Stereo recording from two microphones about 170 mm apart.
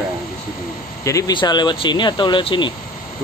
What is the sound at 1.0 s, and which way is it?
Speech, 25° left (ahead or behind).